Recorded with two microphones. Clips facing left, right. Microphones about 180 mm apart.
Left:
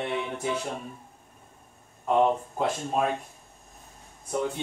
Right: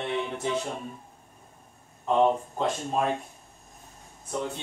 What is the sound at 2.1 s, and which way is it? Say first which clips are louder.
Speech: even; 5° left (ahead or behind).